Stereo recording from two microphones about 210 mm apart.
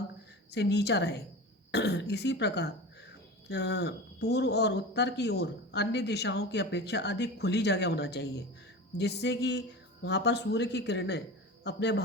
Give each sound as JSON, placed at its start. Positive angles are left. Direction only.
{"t": 0.5, "sound": "speech", "side_deg": 55}